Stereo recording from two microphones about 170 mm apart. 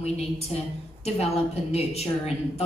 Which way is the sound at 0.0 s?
35° left (ahead or behind).